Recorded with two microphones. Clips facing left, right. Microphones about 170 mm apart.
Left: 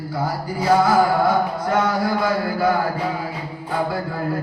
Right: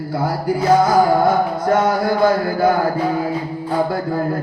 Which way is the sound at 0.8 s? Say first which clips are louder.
Right 3 dB; 45° right (ahead or behind).